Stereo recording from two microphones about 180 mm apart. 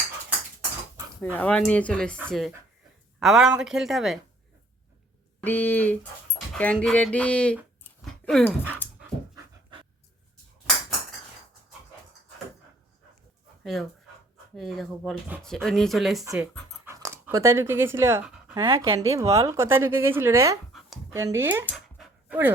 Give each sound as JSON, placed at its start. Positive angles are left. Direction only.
{"t": 1.2, "sound": "speech", "side_deg": 10}
{"t": 5.4, "sound": "speech", "side_deg": 10}
{"t": 8.0, "sound": "dog", "side_deg": 5}
{"t": 9.3, "sound": "pant", "side_deg": -25}
{"t": 14.5, "sound": "speech", "side_deg": 0}
{"t": 16.2, "sound": "speech", "side_deg": -15}
{"t": 18.5, "sound": "speech", "side_deg": -25}